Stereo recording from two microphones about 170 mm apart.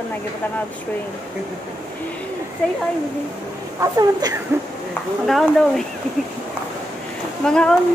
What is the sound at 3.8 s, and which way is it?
Speech, 20° right (ahead or behind).